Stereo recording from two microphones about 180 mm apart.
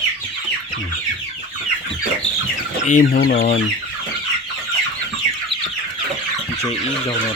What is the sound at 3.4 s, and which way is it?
Chicken, 40° left (ahead or behind).